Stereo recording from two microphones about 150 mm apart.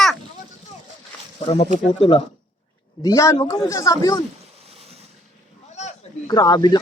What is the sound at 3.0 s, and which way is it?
Speech, 20° left (ahead or behind).